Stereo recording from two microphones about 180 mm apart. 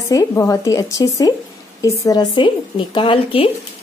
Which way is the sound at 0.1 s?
20° left (ahead or behind).